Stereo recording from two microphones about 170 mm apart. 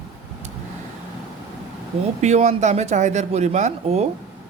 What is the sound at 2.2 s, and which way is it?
Speech, 40° right (ahead or behind).